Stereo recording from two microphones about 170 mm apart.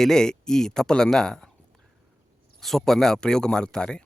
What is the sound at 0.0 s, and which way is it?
Speech, 5° left (ahead or behind).